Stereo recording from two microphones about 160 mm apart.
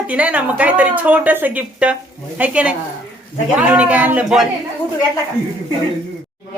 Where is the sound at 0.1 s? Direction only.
10° right (ahead or behind).